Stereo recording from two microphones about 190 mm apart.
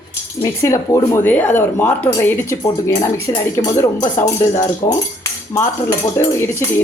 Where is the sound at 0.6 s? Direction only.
15° left (ahead or behind).